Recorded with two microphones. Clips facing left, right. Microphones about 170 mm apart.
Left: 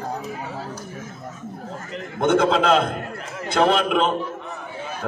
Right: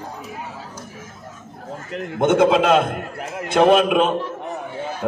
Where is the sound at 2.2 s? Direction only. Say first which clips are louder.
Right 3 dB; 20° right (ahead or behind).